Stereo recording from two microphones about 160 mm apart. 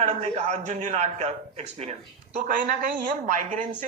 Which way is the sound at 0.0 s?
45° right (ahead or behind).